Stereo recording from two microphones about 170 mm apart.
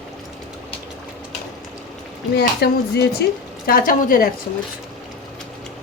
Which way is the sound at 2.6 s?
70° left (ahead or behind).